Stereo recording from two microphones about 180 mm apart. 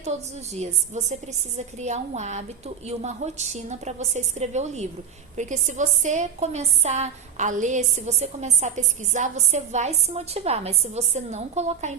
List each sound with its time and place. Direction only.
0.5 s a woman's voice: 40° right (ahead or behind)